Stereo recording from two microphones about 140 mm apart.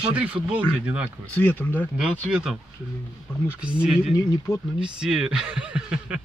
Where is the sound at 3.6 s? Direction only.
10° right (ahead or behind).